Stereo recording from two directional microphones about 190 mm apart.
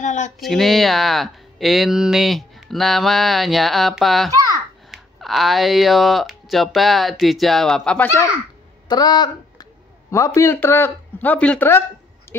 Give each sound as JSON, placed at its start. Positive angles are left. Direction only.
{"t": 0.0, "sound": "speech", "side_deg": 40}
{"t": 0.4, "sound": "speech", "side_deg": 0}
{"t": 4.3, "sound": "a sound", "side_deg": -15}
{"t": 4.9, "sound": "speech", "side_deg": 0}
{"t": 8.8, "sound": "speech", "side_deg": 20}
{"t": 12.3, "sound": "a sound", "side_deg": 10}